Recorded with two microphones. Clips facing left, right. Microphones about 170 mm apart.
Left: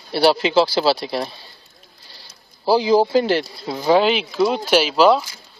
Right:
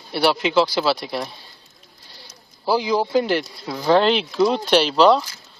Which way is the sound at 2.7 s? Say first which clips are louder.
Left 5 dB; 30° left (ahead or behind).